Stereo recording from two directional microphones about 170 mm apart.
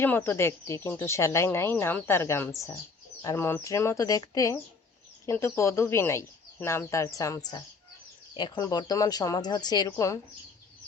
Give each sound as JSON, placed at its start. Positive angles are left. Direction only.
{"t": 0.0, "sound": "a woman's voice", "side_deg": 10}